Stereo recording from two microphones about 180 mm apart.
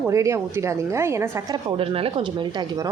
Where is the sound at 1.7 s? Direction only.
30° right (ahead or behind).